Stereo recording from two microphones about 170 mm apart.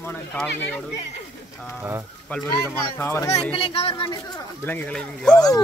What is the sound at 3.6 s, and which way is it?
Speech, 30° left (ahead or behind).